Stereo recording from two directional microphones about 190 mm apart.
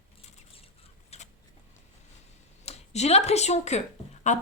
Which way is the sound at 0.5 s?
30° left (ahead or behind).